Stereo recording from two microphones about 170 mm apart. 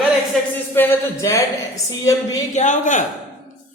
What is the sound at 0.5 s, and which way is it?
A woman's voice, 10° left (ahead or behind).